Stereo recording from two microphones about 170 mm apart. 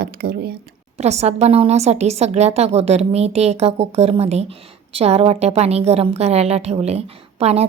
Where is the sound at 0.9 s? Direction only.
40° right (ahead or behind).